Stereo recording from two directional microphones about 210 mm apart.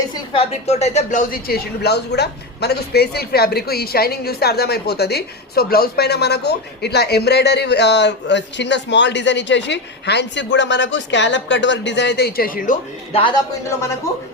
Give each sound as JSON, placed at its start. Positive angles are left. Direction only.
{"t": 0.1, "sound": "a woman's voice", "side_deg": 30}
{"t": 13.1, "sound": "a man's voice", "side_deg": 25}